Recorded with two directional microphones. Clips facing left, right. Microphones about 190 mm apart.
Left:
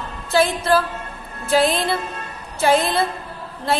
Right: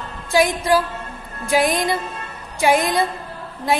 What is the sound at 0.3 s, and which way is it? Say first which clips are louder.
A woman's voice: even; 15° right (ahead or behind).